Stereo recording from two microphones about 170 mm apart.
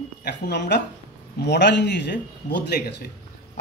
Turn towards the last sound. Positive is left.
turn(degrees=70)  # may be behind; listen again after turning